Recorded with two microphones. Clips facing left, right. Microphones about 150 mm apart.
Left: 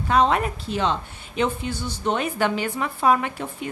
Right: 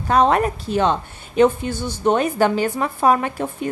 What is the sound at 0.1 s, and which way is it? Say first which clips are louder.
A woman's voice: right 4 dB; 45° right (ahead or behind).